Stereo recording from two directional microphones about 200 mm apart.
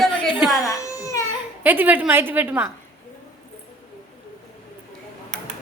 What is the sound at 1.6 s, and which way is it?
A woman's voice, 10° right (ahead or behind).